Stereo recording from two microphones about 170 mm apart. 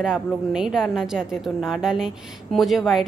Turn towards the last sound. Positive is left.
turn(degrees=0)  # may be behind; listen again after turning